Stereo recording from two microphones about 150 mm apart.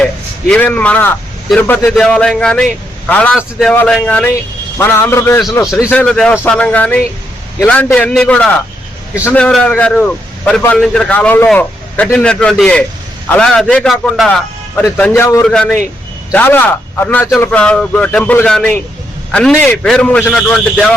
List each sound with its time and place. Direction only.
0.0 s a man's voice: 5° left (ahead or behind)
14.9 s a man's voice: 15° left (ahead or behind)
15.4 s a man's voice: 5° left (ahead or behind)